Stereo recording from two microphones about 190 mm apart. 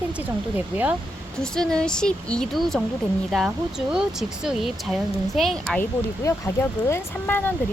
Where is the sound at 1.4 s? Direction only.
5° left (ahead or behind).